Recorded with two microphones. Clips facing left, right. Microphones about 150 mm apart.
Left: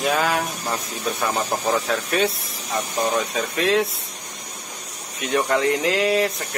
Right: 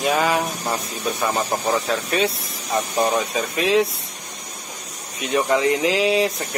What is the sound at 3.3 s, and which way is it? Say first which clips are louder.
Speech: right 2 dB; 5° right (ahead or behind).